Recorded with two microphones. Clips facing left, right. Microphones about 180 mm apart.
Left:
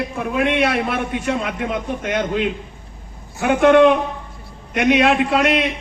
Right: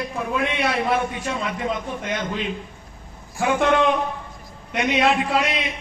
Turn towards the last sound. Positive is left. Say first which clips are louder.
# left 6 dB
turn(degrees=65)  # may be behind; listen again after turning